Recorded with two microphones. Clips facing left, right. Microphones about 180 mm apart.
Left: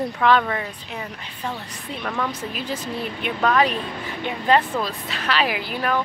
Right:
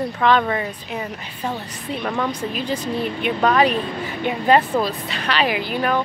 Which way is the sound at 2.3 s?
5° left (ahead or behind).